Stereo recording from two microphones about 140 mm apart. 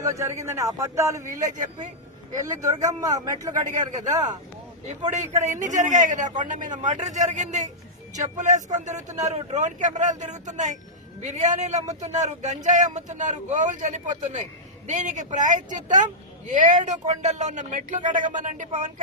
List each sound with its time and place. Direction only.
0.0 s speech: 20° right (ahead or behind)
2.4 s speech: 25° right (ahead or behind)
3.7 s speech: 65° right (ahead or behind)